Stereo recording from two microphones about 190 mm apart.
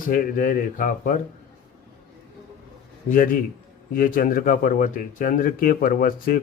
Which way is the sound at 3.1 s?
45° left (ahead or behind).